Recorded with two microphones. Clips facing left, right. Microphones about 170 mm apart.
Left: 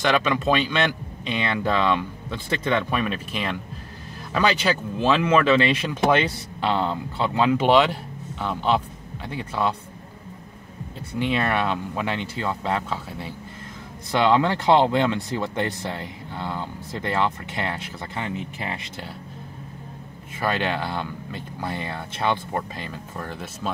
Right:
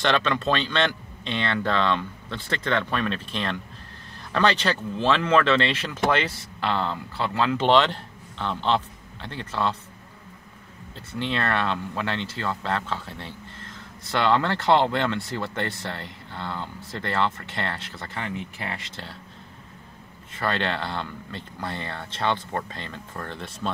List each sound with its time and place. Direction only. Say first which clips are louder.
0.0 s speech: left 2 dB; 10° left (ahead or behind)
11.1 s speech: left 3 dB; 10° left (ahead or behind)
20.3 s speech: left 2 dB; 10° left (ahead or behind)